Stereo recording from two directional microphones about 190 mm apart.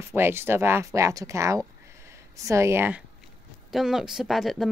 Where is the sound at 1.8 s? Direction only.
15° right (ahead or behind).